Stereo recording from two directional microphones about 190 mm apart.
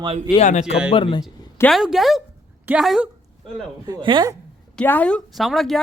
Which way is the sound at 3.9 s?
25° right (ahead or behind).